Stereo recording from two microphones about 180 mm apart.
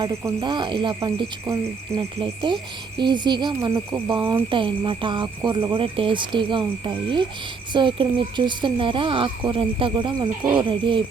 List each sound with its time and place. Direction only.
0.0 s speech: 20° right (ahead or behind)